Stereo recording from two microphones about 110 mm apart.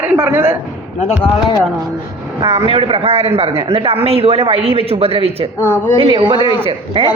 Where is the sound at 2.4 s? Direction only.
30° right (ahead or behind).